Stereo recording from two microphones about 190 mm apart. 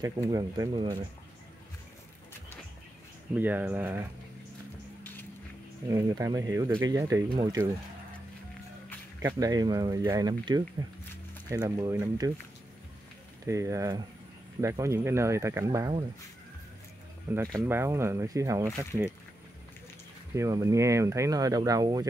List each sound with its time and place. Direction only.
0.3 s speech: 20° right (ahead or behind)
3.3 s speech: 10° right (ahead or behind)
5.9 s speech: 20° right (ahead or behind)
9.2 s speech: 20° right (ahead or behind)
13.5 s speech: 15° right (ahead or behind)
17.3 s speech: 20° right (ahead or behind)
20.3 s speech: 15° right (ahead or behind)